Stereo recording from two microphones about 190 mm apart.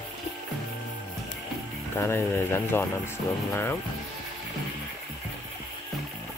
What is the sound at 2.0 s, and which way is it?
Speech, 10° left (ahead or behind).